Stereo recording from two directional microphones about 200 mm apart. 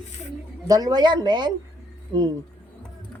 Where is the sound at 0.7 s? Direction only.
20° right (ahead or behind).